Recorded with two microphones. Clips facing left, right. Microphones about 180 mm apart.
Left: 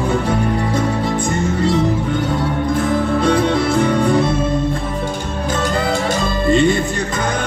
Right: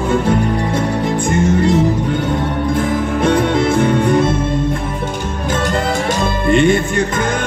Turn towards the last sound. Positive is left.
turn(degrees=-55)  # may be behind; listen again after turning